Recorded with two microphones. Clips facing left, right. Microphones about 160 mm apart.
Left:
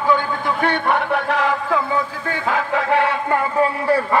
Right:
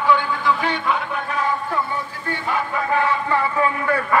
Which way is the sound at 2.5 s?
90° left.